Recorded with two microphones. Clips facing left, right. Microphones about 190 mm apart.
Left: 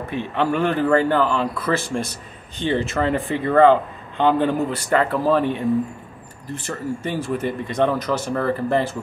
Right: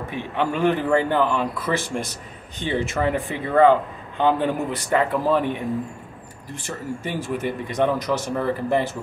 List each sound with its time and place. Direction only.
0.1 s speech: 15° right (ahead or behind)